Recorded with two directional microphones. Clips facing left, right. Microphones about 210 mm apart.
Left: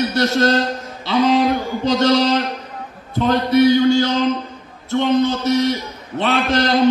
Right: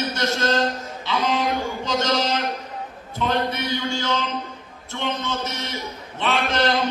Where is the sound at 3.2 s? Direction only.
40° left (ahead or behind).